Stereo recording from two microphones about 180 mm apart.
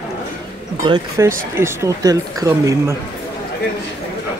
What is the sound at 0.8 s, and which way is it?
Speech, 20° right (ahead or behind).